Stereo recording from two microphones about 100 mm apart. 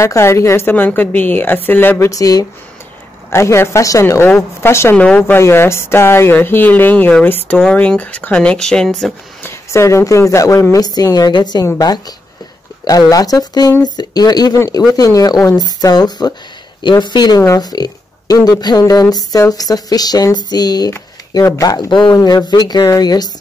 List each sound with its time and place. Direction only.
0.0 s a woman's voice: 30° left (ahead or behind)
2.0 s a woman's voice: 35° left (ahead or behind)
4.9 s speech: 10° left (ahead or behind)
5.2 s speech: 25° left (ahead or behind); by 9.1 s 5° left (ahead or behind)
9.4 s speech: 25° left (ahead or behind); by 11.6 s 45° left (ahead or behind)
12.8 s speech: 40° left (ahead or behind)